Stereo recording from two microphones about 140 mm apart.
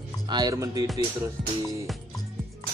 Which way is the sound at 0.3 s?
25° right (ahead or behind).